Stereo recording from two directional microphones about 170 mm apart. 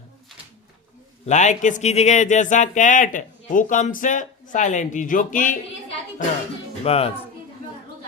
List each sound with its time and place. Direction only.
1.2 s speech: 45° left (ahead or behind)
6.8 s speech: 35° left (ahead or behind)